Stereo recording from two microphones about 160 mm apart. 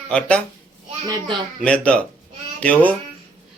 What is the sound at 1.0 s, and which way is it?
Speech, 25° right (ahead or behind).